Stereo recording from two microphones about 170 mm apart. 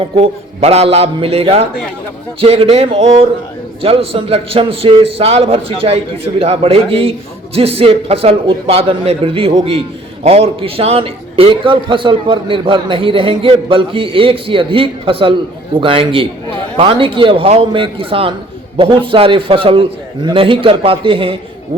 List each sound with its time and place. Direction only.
0.2 s a man's voice: 40° right (ahead or behind)